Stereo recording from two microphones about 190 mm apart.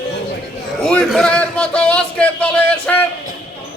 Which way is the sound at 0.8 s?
5° left (ahead or behind).